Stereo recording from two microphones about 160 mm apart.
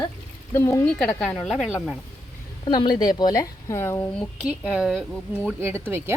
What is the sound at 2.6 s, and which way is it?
A woman's voice, 30° left (ahead or behind).